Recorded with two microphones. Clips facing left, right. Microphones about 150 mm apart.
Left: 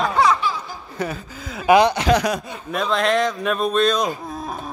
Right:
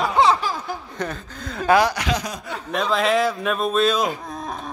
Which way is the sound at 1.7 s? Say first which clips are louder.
Left 3 dB; 20° left (ahead or behind).